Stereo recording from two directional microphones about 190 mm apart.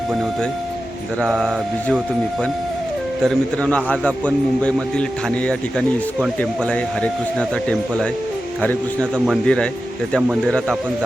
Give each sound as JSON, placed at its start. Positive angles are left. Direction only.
{"t": 1.2, "sound": "a man's voice", "side_deg": 0}
{"t": 3.2, "sound": "a man's voice", "side_deg": 5}